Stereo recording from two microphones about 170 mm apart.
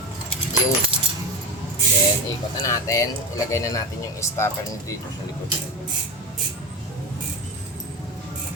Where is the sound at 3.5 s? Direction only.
20° left (ahead or behind).